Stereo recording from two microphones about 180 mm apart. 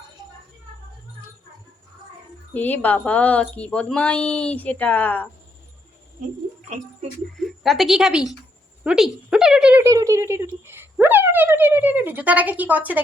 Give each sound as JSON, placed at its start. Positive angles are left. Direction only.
{"t": 2.5, "sound": "speech", "side_deg": 10}
{"t": 7.4, "sound": "speech", "side_deg": 0}
{"t": 9.8, "sound": "speech", "side_deg": -15}